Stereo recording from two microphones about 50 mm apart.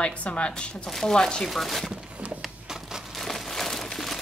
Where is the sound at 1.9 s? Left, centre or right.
Right.